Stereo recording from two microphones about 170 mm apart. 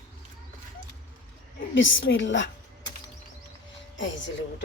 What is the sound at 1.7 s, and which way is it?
Speech, 90° left.